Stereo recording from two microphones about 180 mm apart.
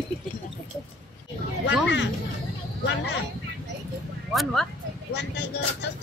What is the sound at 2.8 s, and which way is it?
Speech, 80° left.